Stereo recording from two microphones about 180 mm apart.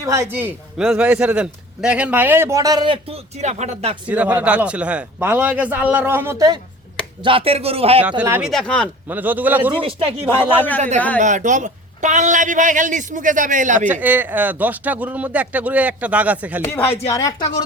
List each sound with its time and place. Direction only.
0.0 s a man's voice: 15° right (ahead or behind); by 3.9 s 35° right (ahead or behind)
4.1 s a man's voice: 10° right (ahead or behind)
7.2 s speech: 30° right (ahead or behind)
8.4 s speech: centre (ahead or behind)
9.0 s a man's voice: 10° right (ahead or behind)
9.7 s speech: 30° right (ahead or behind)
10.2 s speech: 10° left (ahead or behind)
10.8 s a man's voice: 40° right (ahead or behind)
13.8 s a man's voice: 10° right (ahead or behind)
16.6 s speech: 15° left (ahead or behind)